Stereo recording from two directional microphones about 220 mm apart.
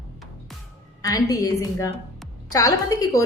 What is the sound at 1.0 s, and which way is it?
Speech, 15° left (ahead or behind).